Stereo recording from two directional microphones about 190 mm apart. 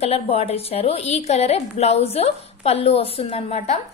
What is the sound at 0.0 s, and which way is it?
A woman's voice, 35° left (ahead or behind).